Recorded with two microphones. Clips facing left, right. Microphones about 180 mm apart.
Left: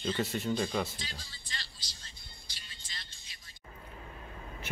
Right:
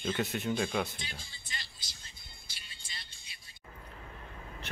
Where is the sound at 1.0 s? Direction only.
20° right (ahead or behind).